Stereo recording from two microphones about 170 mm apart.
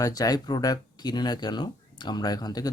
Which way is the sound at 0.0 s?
20° left (ahead or behind).